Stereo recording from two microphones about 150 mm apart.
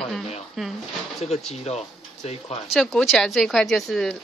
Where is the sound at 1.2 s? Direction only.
45° left (ahead or behind).